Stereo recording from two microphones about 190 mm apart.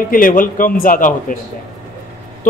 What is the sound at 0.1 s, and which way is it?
A man's voice, 45° left (ahead or behind).